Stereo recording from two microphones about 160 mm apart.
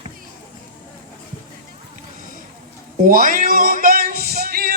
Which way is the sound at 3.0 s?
60° right (ahead or behind).